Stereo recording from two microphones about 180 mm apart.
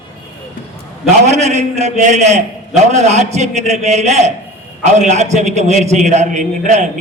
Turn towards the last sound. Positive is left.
turn(degrees=-40)  # may be behind; listen again after turning